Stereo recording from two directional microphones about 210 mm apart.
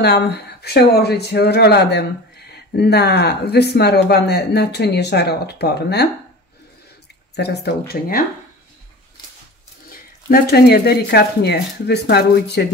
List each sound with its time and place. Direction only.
0.0 s speech: 50° left (ahead or behind)
7.3 s speech: 50° left (ahead or behind)
10.2 s speech: 45° left (ahead or behind)